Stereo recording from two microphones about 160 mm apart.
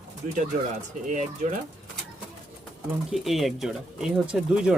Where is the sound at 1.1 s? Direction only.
50° right (ahead or behind).